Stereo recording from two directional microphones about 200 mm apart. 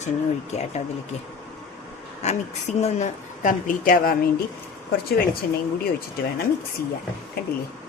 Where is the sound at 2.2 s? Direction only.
35° left (ahead or behind).